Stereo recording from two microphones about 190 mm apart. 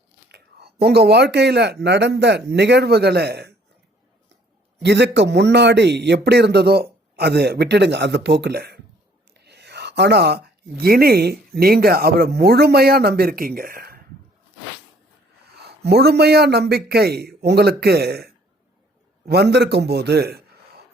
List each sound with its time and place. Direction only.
0.3 s speech: 55° right (ahead or behind)
4.8 s speech: 65° right (ahead or behind)
15.6 s speech: 60° right (ahead or behind)